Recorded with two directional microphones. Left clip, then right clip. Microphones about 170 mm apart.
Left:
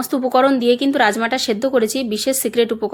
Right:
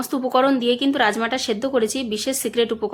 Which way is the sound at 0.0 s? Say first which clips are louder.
Left 3 dB; 30° left (ahead or behind).